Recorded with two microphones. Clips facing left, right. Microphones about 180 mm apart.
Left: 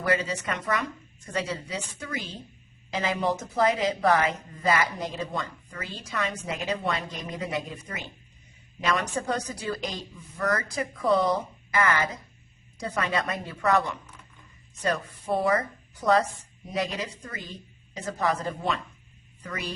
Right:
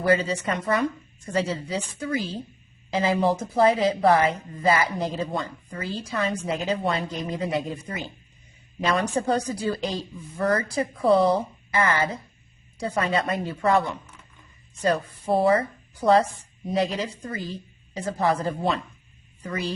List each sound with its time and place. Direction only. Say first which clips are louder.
0.0 s a woman's voice: right 5 dB; 30° right (ahead or behind)